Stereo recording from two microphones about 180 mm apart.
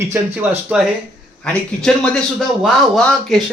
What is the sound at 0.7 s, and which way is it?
Speech, 5° right (ahead or behind).